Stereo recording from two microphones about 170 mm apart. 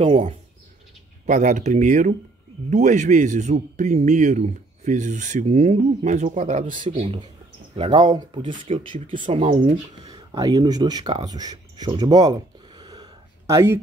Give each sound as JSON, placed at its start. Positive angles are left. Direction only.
{"t": 0.0, "sound": "speech", "side_deg": -35}
{"t": 1.2, "sound": "a man's voice", "side_deg": -45}
{"t": 6.9, "sound": "speech", "side_deg": -30}